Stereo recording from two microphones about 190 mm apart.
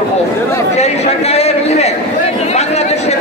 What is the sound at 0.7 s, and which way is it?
Chatter, 35° left (ahead or behind).